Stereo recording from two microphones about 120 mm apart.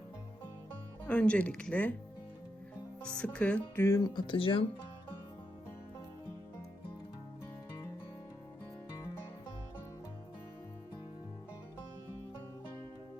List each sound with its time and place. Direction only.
1.0 s speech: 10° left (ahead or behind)
3.0 s speech: 10° left (ahead or behind)
3.8 s speech: 25° left (ahead or behind); by 4.6 s 45° left (ahead or behind)